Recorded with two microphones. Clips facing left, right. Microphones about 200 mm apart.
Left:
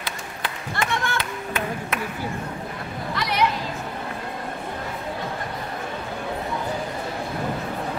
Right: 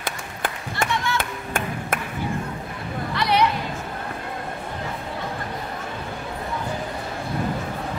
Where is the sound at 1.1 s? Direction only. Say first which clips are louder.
Right 1 dB; 50° right (ahead or behind).